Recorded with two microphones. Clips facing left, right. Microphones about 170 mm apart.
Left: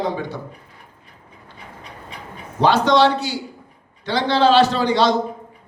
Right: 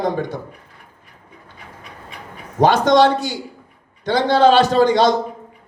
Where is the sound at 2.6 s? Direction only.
45° right (ahead or behind).